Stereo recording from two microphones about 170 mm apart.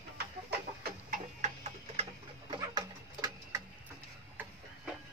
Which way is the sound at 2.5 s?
20° right (ahead or behind).